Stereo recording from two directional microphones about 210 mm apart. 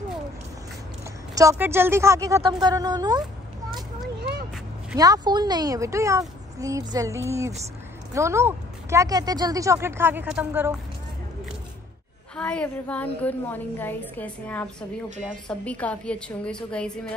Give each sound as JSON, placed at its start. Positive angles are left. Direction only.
{"t": 1.3, "sound": "speech", "side_deg": -15}
{"t": 4.9, "sound": "speech", "side_deg": -15}
{"t": 12.4, "sound": "a woman's voice", "side_deg": 5}